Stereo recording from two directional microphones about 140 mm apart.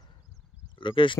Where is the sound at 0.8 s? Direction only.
35° left (ahead or behind).